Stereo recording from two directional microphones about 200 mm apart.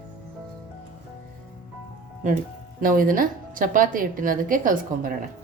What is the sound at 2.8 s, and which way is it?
A woman's voice, 45° right (ahead or behind).